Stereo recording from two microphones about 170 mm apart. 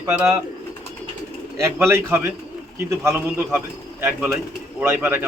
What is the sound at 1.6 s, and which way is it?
Speech, 15° right (ahead or behind).